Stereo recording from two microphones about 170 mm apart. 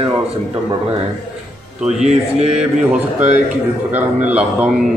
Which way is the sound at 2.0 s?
40° right (ahead or behind).